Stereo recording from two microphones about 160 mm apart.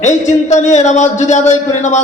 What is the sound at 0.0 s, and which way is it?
A man's voice, 50° left (ahead or behind).